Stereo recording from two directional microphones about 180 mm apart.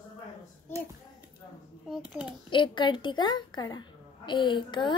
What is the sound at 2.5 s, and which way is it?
A woman's voice, 25° left (ahead or behind).